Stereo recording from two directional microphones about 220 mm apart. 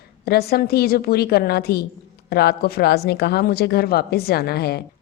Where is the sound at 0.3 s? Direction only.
45° left (ahead or behind).